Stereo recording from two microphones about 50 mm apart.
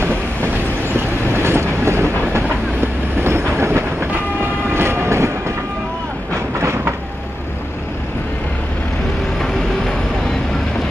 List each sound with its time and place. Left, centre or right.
0.0 s train: right
4.1 s train: right